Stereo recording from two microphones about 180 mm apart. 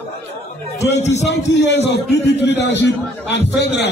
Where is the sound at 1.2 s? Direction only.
80° left.